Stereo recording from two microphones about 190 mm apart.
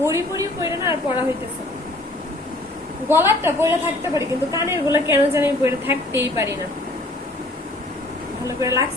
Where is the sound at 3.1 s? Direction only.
10° right (ahead or behind).